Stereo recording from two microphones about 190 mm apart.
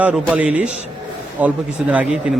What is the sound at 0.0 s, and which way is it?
A man's voice, 5° right (ahead or behind).